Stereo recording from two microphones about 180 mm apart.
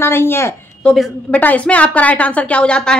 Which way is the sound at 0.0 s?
15° left (ahead or behind).